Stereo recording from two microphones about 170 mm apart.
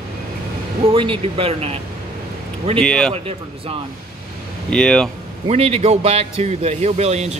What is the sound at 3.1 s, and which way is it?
Speech, 35° right (ahead or behind).